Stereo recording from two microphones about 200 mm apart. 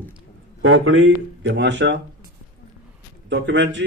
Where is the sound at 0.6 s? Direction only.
90° right; by 2.0 s 65° right (ahead or behind).